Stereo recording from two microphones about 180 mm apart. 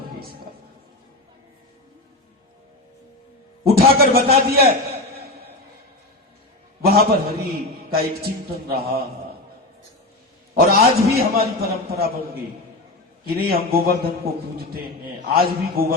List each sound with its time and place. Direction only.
3.6 s a man's voice: 55° right (ahead or behind)
6.8 s a man's voice: 55° right (ahead or behind)
10.5 s a man's voice: 60° right (ahead or behind)
13.2 s a man's voice: 55° right (ahead or behind)